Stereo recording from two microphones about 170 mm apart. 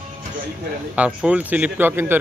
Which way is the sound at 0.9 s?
5° right (ahead or behind).